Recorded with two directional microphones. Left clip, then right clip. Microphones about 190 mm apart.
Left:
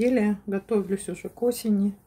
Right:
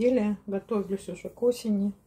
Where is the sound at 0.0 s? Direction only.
40° left (ahead or behind).